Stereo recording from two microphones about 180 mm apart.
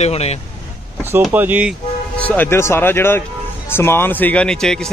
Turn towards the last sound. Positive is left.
turn(degrees=5)  # may be behind; listen again after turning